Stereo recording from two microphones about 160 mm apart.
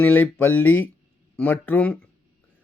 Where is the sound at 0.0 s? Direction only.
10° left (ahead or behind).